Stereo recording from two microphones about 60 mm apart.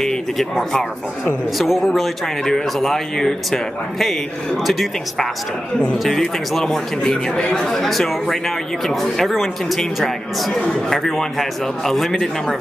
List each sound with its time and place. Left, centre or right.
0.0 s speech: centre
5.8 s speech: centre
6.1 s speech: centre
10.6 s speech: centre